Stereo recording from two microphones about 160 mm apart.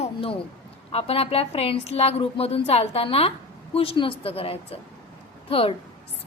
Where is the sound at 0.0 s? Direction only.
35° left (ahead or behind).